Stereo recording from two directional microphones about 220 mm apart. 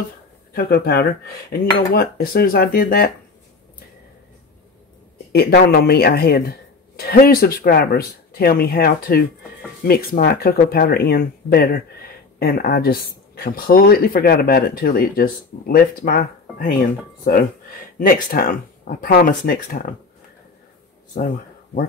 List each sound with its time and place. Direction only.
0.5 s speech: 45° left (ahead or behind)
5.3 s speech: 45° left (ahead or behind)